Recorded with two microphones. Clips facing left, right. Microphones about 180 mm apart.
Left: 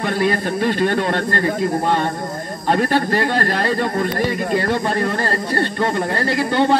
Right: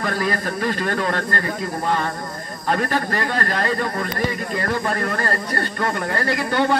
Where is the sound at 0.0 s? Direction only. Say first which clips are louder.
Left 4 dB; 25° left (ahead or behind).